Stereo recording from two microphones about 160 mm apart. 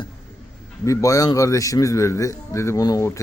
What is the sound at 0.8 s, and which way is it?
A man's voice, 20° left (ahead or behind).